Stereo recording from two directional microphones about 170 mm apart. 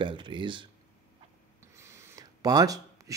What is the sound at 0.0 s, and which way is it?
Speech, 30° right (ahead or behind).